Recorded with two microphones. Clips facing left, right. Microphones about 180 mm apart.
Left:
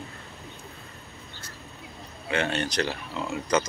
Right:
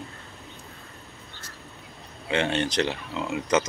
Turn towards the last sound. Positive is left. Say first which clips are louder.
# right 2 dB
turn(degrees=-20)  # may be behind; listen again after turning